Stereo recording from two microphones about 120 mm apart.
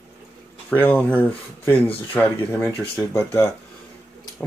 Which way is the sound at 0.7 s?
15° left (ahead or behind).